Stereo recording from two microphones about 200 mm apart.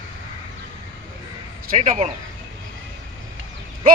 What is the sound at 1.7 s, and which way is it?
Speech, 40° right (ahead or behind).